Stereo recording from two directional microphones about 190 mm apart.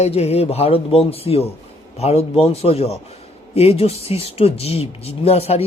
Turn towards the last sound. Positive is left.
turn(degrees=30)  # may be behind; listen again after turning